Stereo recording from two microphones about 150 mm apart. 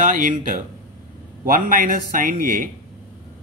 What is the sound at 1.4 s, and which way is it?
Speech, 65° right (ahead or behind).